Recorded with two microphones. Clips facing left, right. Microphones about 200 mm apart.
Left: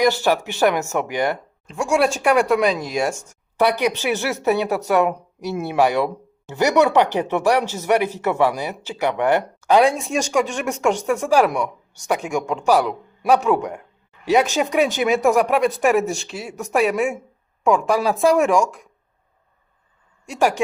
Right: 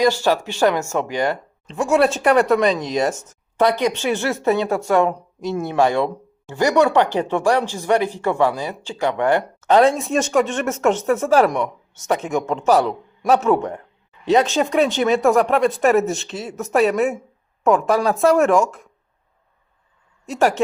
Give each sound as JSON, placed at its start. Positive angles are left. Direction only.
{"t": 0.2, "sound": "speech", "side_deg": 15}
{"t": 1.7, "sound": "speech", "side_deg": 0}
{"t": 3.6, "sound": "speech", "side_deg": 15}
{"t": 12.6, "sound": "speech", "side_deg": 0}
{"t": 14.6, "sound": "speech", "side_deg": 15}
{"t": 16.0, "sound": "speech", "side_deg": 0}
{"t": 20.3, "sound": "speech", "side_deg": 0}